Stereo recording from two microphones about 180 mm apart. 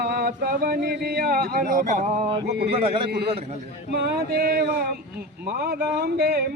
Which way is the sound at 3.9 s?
65° right (ahead or behind).